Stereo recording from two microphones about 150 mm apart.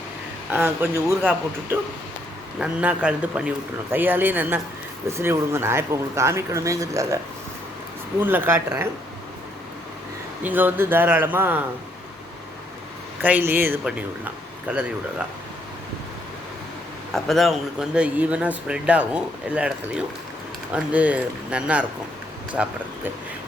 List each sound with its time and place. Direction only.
0.5 s a man's voice: 15° right (ahead or behind)
8.2 s a man's voice: 15° right (ahead or behind)
10.4 s a man's voice: 10° right (ahead or behind)
13.2 s a man's voice: 10° right (ahead or behind)
17.1 s a man's voice: centre (ahead or behind)